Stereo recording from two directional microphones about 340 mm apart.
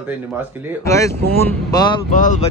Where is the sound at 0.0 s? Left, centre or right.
Centre.